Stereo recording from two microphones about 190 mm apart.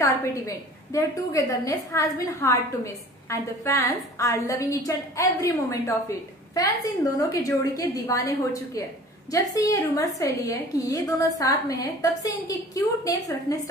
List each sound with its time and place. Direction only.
0.0 s a woman's voice: 15° left (ahead or behind)